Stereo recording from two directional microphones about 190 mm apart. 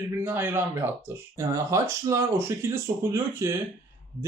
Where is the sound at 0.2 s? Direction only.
10° right (ahead or behind).